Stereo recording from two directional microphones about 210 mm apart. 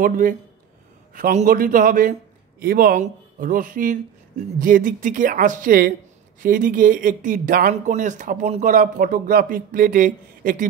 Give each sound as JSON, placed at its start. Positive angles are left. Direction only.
{"t": 0.0, "sound": "speech", "side_deg": -40}